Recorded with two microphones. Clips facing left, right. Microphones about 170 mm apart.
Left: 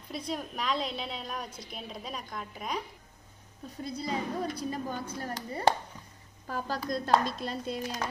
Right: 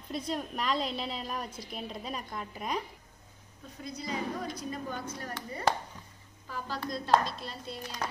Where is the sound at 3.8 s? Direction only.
30° left (ahead or behind).